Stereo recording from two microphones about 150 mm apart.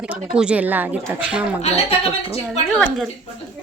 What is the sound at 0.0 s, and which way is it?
A woman's voice, 5° right (ahead or behind).